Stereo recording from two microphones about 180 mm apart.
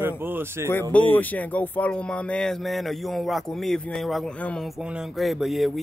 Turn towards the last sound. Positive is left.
turn(degrees=0)  # may be behind; listen again after turning